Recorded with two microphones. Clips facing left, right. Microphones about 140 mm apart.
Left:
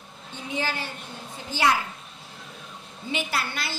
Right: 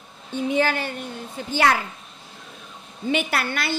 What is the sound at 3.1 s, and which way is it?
Speech, 60° right (ahead or behind).